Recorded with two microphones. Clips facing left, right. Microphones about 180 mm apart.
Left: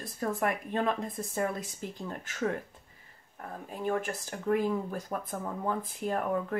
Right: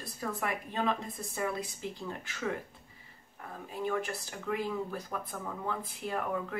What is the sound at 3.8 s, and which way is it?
Speech, 45° left (ahead or behind).